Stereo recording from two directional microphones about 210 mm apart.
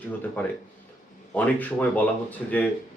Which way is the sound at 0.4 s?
10° left (ahead or behind).